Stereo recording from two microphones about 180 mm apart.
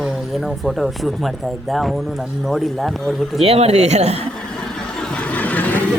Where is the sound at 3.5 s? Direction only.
35° right (ahead or behind).